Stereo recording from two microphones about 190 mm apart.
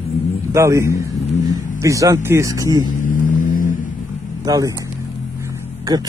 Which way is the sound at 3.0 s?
45° left (ahead or behind).